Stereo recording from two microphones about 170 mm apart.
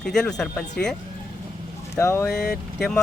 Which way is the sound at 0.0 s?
5° left (ahead or behind).